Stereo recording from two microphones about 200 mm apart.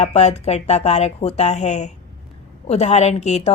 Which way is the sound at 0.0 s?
35° left (ahead or behind).